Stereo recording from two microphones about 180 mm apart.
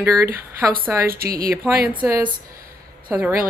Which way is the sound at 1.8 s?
10° right (ahead or behind).